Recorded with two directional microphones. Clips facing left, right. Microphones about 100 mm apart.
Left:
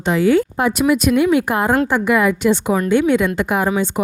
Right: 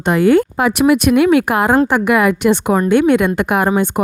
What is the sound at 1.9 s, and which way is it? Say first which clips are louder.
A woman's voice: right 2 dB; 70° right (ahead or behind).